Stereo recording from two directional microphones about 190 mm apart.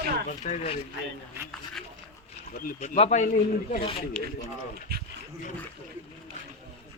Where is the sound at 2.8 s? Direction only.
35° left (ahead or behind).